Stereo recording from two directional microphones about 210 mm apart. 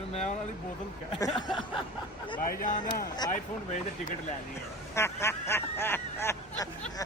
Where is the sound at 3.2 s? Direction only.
20° left (ahead or behind).